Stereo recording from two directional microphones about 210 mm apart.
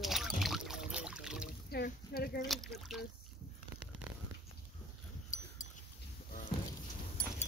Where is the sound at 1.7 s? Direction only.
45° left (ahead or behind).